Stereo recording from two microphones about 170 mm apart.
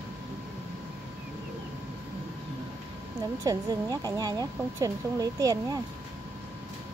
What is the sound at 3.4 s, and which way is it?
Speech, 20° right (ahead or behind).